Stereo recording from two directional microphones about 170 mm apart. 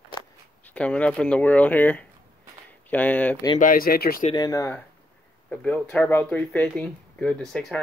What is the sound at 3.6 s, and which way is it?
Speech, 55° left (ahead or behind).